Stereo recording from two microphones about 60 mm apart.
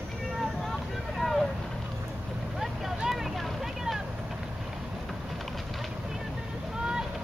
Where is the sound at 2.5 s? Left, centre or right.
Centre.